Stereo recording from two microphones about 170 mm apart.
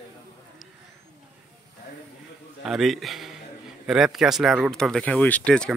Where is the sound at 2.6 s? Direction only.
Centre (ahead or behind).